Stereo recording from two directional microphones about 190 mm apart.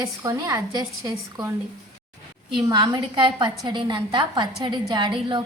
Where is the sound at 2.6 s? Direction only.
20° right (ahead or behind).